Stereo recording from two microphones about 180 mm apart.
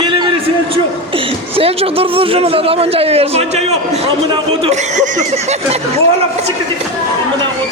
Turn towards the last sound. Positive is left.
turn(degrees=-35)  # may be behind; listen again after turning